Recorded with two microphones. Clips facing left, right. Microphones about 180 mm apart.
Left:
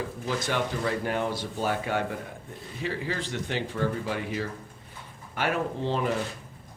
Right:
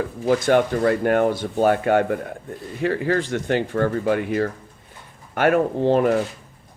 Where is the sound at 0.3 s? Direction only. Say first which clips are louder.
Right 12 dB; 50° right (ahead or behind).